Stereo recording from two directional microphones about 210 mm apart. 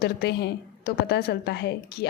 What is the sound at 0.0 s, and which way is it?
A woman's voice, 50° left (ahead or behind).